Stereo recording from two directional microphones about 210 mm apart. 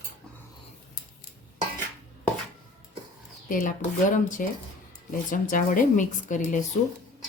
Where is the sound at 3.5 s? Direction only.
40° left (ahead or behind).